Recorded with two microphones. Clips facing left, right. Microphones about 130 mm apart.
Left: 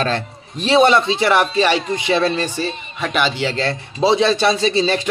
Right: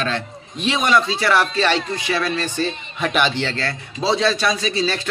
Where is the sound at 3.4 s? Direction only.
20° left (ahead or behind).